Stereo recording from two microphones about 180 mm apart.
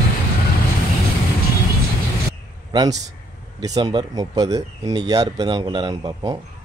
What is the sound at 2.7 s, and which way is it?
A man's voice, 20° right (ahead or behind).